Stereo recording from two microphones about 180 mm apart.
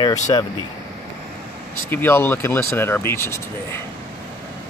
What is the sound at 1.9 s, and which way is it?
Speech, 10° left (ahead or behind).